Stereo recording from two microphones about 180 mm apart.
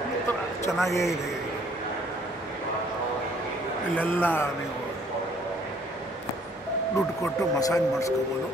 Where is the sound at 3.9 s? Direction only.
10° left (ahead or behind).